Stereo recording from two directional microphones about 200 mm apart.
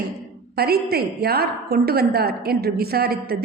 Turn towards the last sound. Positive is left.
turn(degrees=-50)  # may be behind; listen again after turning